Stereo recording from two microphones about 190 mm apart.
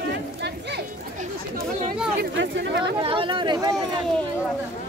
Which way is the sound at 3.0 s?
25° right (ahead or behind).